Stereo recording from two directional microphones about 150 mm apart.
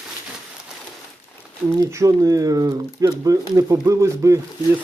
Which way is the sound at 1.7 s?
25° right (ahead or behind).